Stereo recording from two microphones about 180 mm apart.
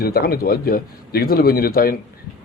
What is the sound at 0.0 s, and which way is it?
Speech, 60° left (ahead or behind).